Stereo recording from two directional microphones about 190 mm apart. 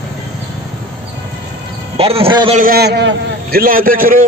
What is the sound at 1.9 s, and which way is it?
Speech, 30° right (ahead or behind).